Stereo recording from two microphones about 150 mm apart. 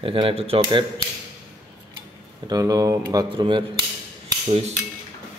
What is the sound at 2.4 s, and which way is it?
A man's voice, 25° right (ahead or behind).